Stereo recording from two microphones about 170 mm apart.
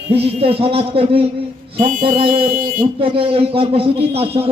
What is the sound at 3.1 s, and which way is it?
A man's voice, 35° right (ahead or behind).